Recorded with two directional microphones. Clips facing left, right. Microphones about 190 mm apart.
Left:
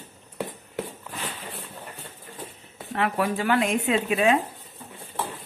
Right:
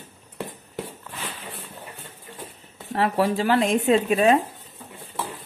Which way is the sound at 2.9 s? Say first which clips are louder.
Right 3 dB; 35° right (ahead or behind).